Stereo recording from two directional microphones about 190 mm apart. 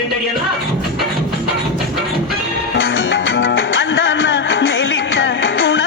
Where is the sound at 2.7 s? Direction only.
80° left.